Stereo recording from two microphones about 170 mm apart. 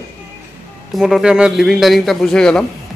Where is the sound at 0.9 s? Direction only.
Centre (ahead or behind).